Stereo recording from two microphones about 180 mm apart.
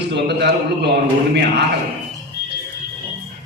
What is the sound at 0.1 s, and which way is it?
Speech, 65° right (ahead or behind).